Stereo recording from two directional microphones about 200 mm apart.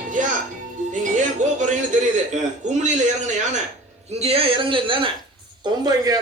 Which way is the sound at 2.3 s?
35° right (ahead or behind).